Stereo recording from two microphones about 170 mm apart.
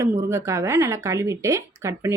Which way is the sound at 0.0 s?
15° right (ahead or behind).